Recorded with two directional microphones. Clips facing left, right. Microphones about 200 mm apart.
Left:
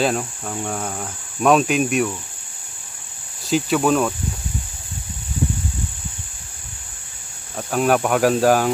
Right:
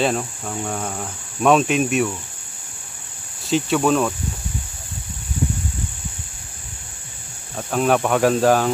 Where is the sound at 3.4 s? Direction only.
5° left (ahead or behind).